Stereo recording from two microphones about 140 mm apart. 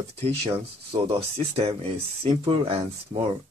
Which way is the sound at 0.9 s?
40° right (ahead or behind).